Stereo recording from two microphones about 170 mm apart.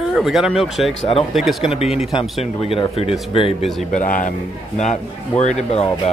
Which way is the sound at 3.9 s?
50° left (ahead or behind).